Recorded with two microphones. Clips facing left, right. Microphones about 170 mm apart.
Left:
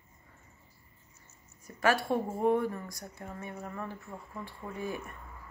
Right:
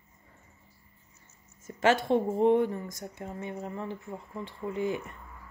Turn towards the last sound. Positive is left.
turn(degrees=-20)  # may be behind; listen again after turning